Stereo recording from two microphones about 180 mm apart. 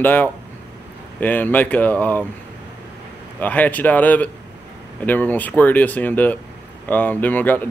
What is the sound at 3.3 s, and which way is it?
Speech, 10° left (ahead or behind).